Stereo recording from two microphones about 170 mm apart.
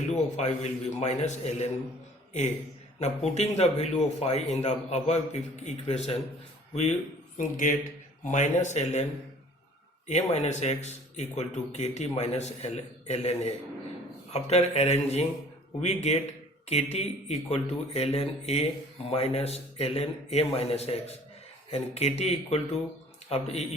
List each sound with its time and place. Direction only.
0.3 s a man's voice: 40° left (ahead or behind)
3.0 s a man's voice: 40° left (ahead or behind)
7.3 s speech: 50° left (ahead or behind)
10.1 s a man's voice: 40° left (ahead or behind)